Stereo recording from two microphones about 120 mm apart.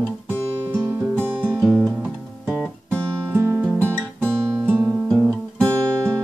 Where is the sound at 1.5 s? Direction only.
Centre (ahead or behind).